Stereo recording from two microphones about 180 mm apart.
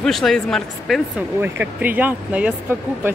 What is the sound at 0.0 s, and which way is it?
Speech, centre (ahead or behind).